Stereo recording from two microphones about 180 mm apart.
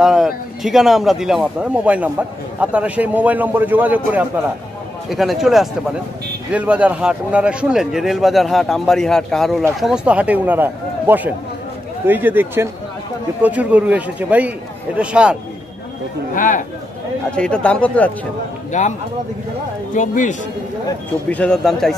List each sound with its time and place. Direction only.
0.0 s a man's voice: centre (ahead or behind)
16.3 s speech: 45° left (ahead or behind)
17.4 s speech: 5° left (ahead or behind)
18.7 s a man's voice: 40° left (ahead or behind)
21.3 s a man's voice: 5° left (ahead or behind)